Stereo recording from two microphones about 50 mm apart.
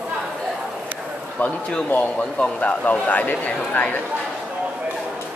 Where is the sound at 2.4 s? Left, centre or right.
Left.